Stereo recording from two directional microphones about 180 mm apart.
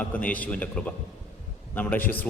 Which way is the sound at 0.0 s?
10° left (ahead or behind).